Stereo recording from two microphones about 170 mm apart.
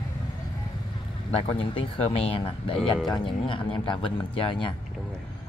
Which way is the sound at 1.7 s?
35° left (ahead or behind).